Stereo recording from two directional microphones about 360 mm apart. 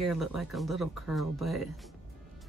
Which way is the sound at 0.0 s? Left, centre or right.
Centre.